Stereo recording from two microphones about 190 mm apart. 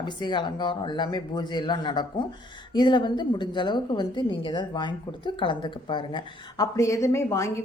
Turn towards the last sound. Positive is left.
turn(degrees=15)  # may be behind; listen again after turning